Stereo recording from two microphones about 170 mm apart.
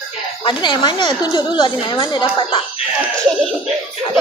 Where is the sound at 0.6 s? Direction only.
25° left (ahead or behind).